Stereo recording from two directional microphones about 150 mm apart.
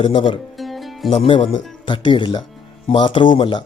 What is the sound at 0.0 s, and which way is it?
Speech, 35° left (ahead or behind).